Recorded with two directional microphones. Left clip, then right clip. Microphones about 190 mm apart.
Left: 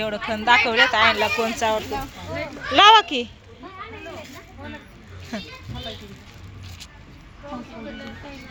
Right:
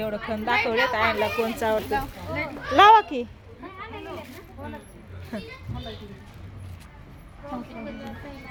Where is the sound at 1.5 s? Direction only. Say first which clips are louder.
Left 1 dB; 15° right (ahead or behind).